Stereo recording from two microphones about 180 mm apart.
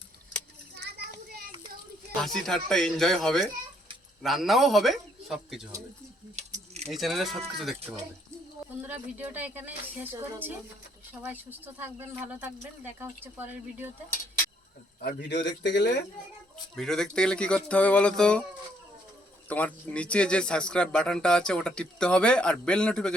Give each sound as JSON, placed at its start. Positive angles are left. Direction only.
{"t": 0.8, "sound": "children playing", "side_deg": -65}
{"t": 2.1, "sound": "a man's voice", "side_deg": 0}
{"t": 6.3, "sound": "a sound", "side_deg": -35}
{"t": 6.9, "sound": "speech", "side_deg": 0}
{"t": 8.8, "sound": "speech", "side_deg": -10}
{"t": 15.0, "sound": "a man's voice", "side_deg": 75}
{"t": 16.7, "sound": "speech", "side_deg": 5}
{"t": 19.5, "sound": "speech", "side_deg": 10}